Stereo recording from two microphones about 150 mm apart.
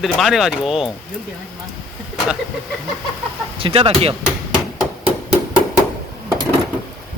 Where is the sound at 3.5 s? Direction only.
35° right (ahead or behind).